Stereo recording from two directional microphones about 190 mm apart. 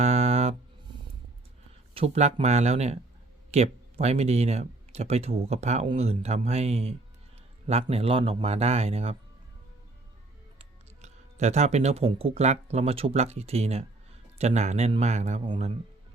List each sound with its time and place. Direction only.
0.0 s music: 35° right (ahead or behind)
1.9 s speech: 35° right (ahead or behind)
10.6 s speech: 35° right (ahead or behind)